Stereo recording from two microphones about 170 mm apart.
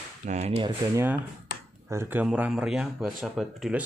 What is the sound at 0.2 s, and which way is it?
Speech, 45° right (ahead or behind).